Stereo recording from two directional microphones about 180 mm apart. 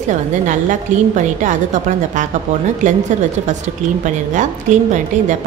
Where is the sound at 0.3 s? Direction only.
45° right (ahead or behind).